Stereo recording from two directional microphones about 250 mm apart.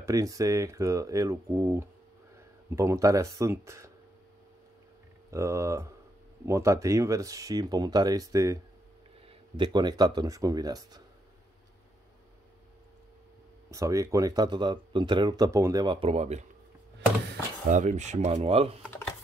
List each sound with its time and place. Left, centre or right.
0.0 s speech: centre
5.3 s speech: centre
9.6 s speech: centre
13.7 s speech: centre